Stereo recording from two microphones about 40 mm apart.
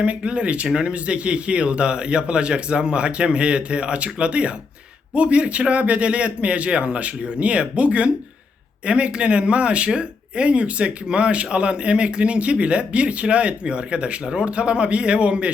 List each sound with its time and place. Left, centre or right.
0.0 s a man's voice: right